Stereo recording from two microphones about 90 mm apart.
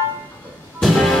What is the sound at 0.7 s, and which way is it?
Music, 5° left (ahead or behind).